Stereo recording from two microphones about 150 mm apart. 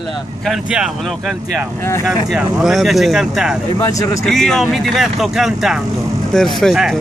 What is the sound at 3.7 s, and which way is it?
Speech, 20° left (ahead or behind).